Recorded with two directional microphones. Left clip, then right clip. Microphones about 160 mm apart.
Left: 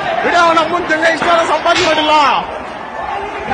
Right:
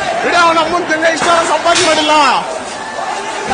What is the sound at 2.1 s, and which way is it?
Speech, 50° right (ahead or behind).